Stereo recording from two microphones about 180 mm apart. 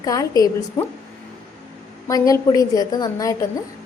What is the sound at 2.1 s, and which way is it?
A woman's voice, 20° left (ahead or behind).